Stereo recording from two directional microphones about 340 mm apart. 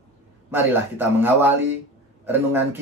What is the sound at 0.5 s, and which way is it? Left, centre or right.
A man's voice, centre.